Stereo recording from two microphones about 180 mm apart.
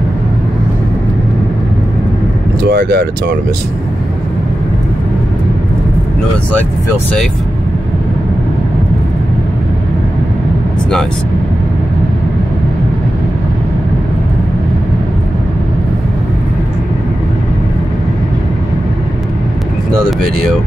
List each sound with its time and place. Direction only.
2.7 s speech: 60° right (ahead or behind)